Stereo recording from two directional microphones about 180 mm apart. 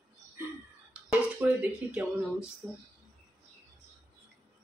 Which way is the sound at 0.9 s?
10° right (ahead or behind).